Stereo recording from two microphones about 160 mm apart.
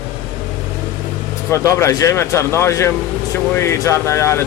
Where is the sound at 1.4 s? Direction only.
20° left (ahead or behind).